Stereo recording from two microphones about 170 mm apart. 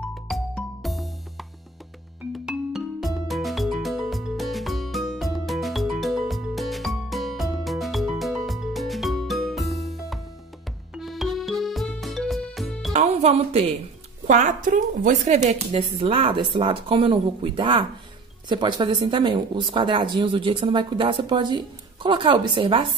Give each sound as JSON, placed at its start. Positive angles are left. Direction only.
{"t": 0.0, "sound": "music", "side_deg": 5}
{"t": 2.3, "sound": "music", "side_deg": 0}
{"t": 12.9, "sound": "music", "side_deg": -40}
{"t": 14.2, "sound": "speech", "side_deg": -45}